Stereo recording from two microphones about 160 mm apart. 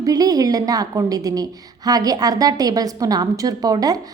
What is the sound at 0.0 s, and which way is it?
A woman's voice, 25° right (ahead or behind).